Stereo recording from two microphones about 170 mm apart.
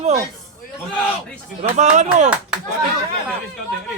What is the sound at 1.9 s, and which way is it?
Speech, 45° right (ahead or behind).